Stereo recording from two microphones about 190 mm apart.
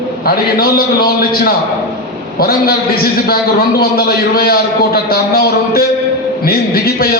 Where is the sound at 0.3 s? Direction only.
55° left (ahead or behind).